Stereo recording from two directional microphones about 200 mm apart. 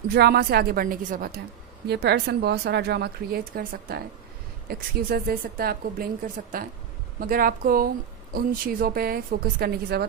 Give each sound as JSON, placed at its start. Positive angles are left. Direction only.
{"t": 0.1, "sound": "a woman's voice", "side_deg": -55}
{"t": 1.9, "sound": "a woman's voice", "side_deg": -55}